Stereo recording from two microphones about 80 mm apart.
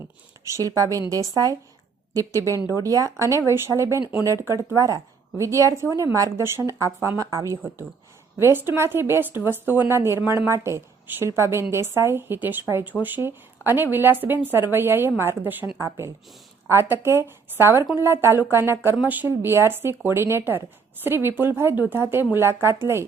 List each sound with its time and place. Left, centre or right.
0.5 s a woman's voice: right
2.8 s a woman's voice: right
8.4 s a woman's voice: right